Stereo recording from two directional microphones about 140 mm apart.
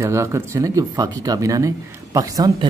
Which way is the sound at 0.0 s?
20° right (ahead or behind).